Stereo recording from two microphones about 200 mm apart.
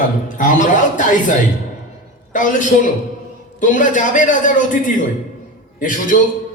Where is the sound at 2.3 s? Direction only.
40° left (ahead or behind).